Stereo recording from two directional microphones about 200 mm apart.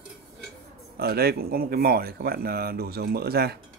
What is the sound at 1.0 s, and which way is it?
Speech, 50° right (ahead or behind).